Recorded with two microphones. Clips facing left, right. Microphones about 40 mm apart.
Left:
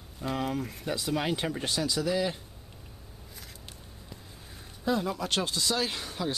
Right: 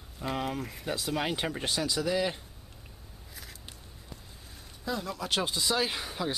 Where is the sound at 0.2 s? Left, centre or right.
Centre.